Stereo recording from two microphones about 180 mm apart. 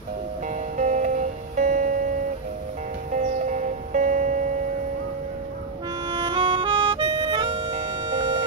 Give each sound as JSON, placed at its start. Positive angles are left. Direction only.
{"t": 0.7, "sound": "music", "side_deg": -45}
{"t": 3.1, "sound": "music", "side_deg": -45}
{"t": 6.2, "sound": "music", "side_deg": -25}